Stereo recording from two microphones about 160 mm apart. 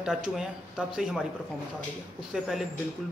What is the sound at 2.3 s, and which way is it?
Speech, centre (ahead or behind).